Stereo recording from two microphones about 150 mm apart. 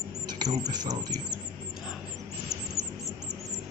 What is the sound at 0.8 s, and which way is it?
Speech, 25° right (ahead or behind).